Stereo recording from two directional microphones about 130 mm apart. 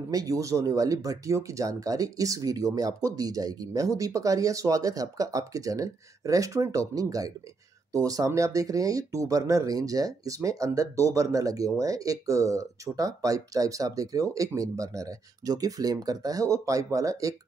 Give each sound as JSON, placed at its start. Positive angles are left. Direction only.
{"t": 0.1, "sound": "speech", "side_deg": -25}